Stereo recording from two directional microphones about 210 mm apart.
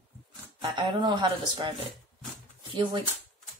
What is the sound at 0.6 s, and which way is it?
Speech, 20° right (ahead or behind).